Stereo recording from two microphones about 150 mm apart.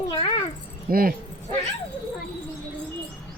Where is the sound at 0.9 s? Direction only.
75° right (ahead or behind).